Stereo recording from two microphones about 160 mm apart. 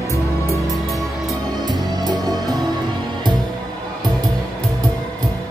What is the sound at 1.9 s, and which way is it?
Music, 25° right (ahead or behind).